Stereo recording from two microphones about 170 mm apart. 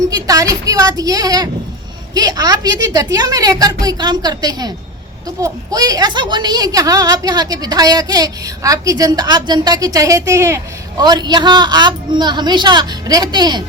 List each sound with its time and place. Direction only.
0.1 s a woman's voice: 20° right (ahead or behind)